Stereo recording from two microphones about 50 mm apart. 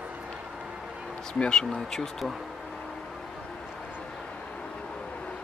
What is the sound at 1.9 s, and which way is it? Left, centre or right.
Speech, centre.